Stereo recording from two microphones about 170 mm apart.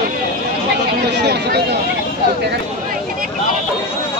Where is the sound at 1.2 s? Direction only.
75° right (ahead or behind).